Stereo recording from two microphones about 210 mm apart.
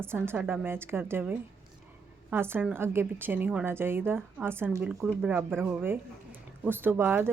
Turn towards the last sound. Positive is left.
turn(degrees=-10)  # may be behind; listen again after turning